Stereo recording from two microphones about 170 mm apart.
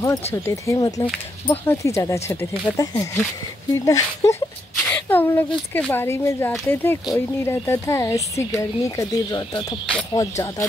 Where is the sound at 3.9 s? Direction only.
20° left (ahead or behind).